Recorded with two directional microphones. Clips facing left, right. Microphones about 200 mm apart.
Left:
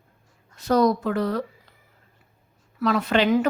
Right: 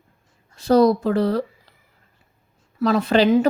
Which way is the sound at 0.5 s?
30° right (ahead or behind).